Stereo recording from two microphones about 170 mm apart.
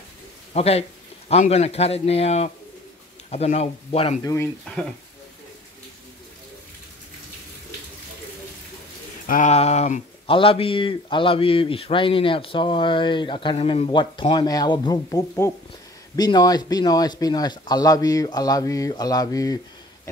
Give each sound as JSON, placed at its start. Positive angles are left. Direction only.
{"t": 0.5, "sound": "a man's voice", "side_deg": 35}
{"t": 4.2, "sound": "speech", "side_deg": 20}
{"t": 9.3, "sound": "a man's voice", "side_deg": 45}